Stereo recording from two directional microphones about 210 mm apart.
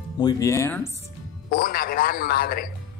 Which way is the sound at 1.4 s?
45° left (ahead or behind).